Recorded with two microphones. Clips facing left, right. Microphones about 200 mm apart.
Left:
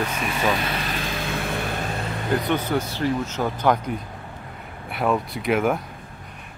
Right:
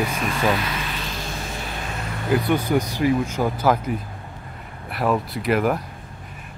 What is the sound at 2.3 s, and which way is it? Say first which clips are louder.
Speech: right 3 dB; 10° right (ahead or behind).